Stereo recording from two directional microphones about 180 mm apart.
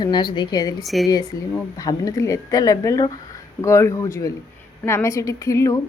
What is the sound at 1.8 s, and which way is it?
A woman's voice, 20° left (ahead or behind).